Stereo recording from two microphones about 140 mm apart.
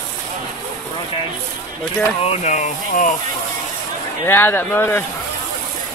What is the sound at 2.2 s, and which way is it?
Speech, 60° left (ahead or behind).